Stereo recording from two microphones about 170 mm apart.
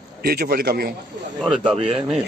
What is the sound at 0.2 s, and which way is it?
Speech, 60° right (ahead or behind).